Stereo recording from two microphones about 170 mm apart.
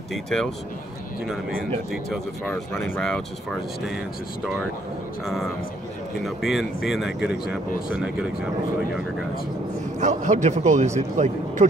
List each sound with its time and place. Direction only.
0.1 s speech: 5° left (ahead or behind)
5.2 s speech: centre (ahead or behind)
9.9 s a man's voice: 45° right (ahead or behind)